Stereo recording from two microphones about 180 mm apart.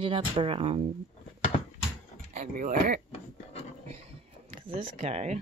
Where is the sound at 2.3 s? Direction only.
45° right (ahead or behind).